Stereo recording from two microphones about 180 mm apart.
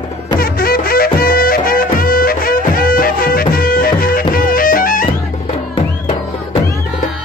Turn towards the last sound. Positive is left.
turn(degrees=35)  # may be behind; listen again after turning